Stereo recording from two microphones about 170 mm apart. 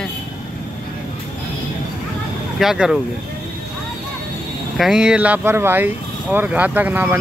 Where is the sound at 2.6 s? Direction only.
Centre (ahead or behind).